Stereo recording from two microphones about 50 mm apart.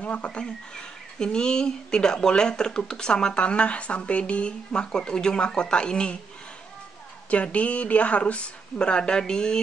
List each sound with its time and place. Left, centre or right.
0.0 s speech: left
7.2 s speech: left